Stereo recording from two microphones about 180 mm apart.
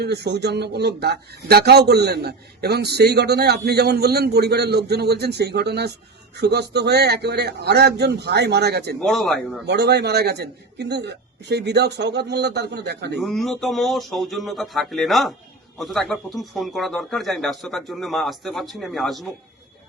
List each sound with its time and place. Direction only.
0.0 s speech: 65° right (ahead or behind)
9.0 s speech: centre (ahead or behind)
9.6 s a man's voice: 65° right (ahead or behind)
13.1 s speech: centre (ahead or behind)